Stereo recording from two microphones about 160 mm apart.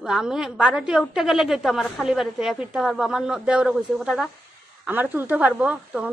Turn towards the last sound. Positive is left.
turn(degrees=-10)  # may be behind; listen again after turning